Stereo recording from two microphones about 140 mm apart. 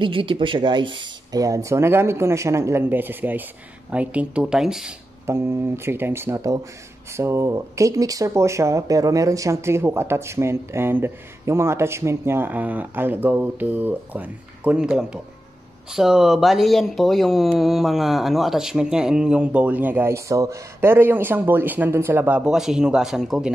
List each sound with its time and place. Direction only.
0.0 s speech: 40° right (ahead or behind); by 4.9 s 5° right (ahead or behind)
5.2 s speech: 20° right (ahead or behind); by 23.5 s 5° right (ahead or behind)